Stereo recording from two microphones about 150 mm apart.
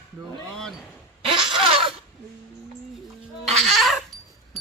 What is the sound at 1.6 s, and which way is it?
Zipper, 35° right (ahead or behind).